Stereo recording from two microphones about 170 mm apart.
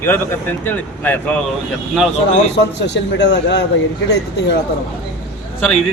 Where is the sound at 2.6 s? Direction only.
90° left.